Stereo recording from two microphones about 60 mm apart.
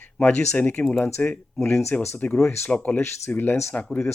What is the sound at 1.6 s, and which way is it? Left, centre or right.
Speech, left.